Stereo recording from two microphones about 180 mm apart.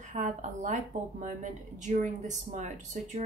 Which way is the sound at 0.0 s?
40° right (ahead or behind).